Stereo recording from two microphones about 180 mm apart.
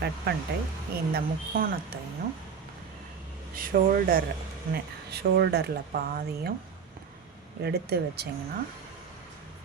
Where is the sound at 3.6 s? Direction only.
50° right (ahead or behind).